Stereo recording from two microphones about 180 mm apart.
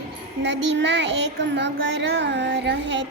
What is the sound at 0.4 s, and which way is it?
Child singing, 75° right (ahead or behind).